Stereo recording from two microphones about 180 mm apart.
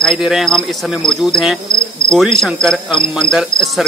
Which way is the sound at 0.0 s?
Centre (ahead or behind).